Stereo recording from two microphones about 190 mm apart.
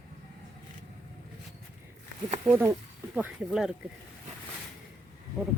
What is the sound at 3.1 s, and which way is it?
Speech, 5° right (ahead or behind).